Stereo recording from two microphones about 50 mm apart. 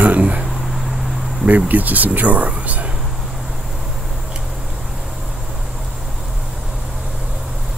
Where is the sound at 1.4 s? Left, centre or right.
Right.